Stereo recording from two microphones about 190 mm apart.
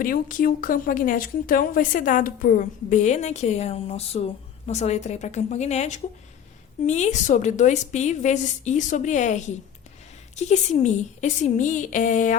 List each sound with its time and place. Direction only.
0.0 s speech: 45° left (ahead or behind)